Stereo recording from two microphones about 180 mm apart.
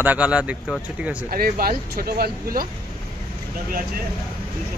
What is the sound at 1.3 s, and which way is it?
Speech, 55° right (ahead or behind).